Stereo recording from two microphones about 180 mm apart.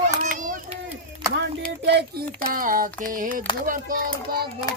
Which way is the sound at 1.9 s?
65° right (ahead or behind).